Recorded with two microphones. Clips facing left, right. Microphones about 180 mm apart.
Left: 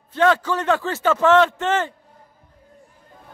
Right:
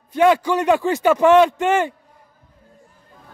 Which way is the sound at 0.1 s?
15° right (ahead or behind).